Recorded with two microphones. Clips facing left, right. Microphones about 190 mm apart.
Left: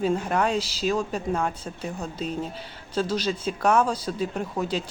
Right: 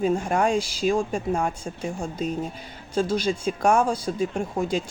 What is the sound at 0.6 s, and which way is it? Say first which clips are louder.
Speech: right 3 dB; 50° right (ahead or behind).